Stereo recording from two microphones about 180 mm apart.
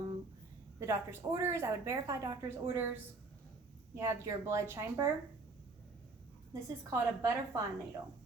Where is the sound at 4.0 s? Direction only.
15° right (ahead or behind).